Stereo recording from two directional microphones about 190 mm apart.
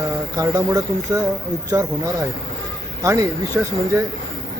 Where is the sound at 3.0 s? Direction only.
15° right (ahead or behind).